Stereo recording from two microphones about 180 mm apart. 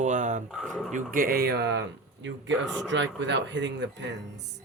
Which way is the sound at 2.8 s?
85° right.